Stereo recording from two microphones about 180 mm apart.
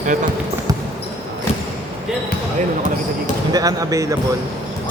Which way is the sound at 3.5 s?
20° right (ahead or behind).